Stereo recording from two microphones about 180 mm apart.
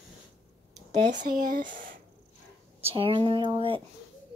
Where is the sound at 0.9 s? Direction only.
45° right (ahead or behind).